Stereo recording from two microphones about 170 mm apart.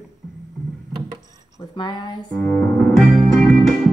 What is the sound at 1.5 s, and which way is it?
Speech, 25° left (ahead or behind).